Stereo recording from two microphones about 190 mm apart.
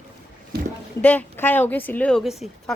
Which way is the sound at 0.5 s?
55° right (ahead or behind).